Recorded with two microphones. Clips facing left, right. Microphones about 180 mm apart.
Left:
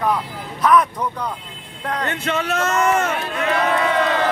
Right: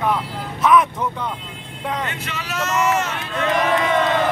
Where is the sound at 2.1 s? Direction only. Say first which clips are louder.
Left 7 dB; 50° left (ahead or behind).